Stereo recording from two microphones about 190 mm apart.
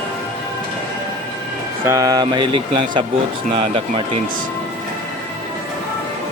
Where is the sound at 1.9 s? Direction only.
20° right (ahead or behind).